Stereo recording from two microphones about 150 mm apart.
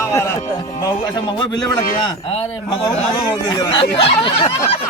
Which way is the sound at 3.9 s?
40° left (ahead or behind).